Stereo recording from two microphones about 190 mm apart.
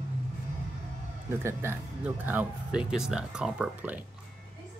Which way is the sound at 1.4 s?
15° right (ahead or behind).